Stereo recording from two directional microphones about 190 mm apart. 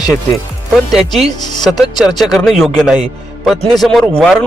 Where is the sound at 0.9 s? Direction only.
Centre (ahead or behind).